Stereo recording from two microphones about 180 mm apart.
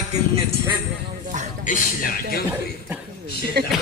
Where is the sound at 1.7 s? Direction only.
55° left (ahead or behind).